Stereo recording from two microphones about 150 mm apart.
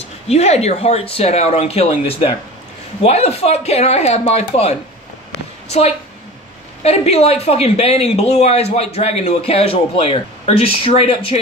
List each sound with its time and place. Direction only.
0.0 s speech: 45° left (ahead or behind)